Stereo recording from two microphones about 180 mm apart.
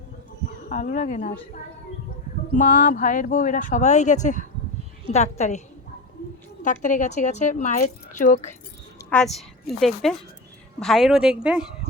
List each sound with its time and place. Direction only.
0.7 s speech: 45° left (ahead or behind)
2.5 s a woman's voice: 45° left (ahead or behind)
9.0 s a woman's voice: 5° left (ahead or behind)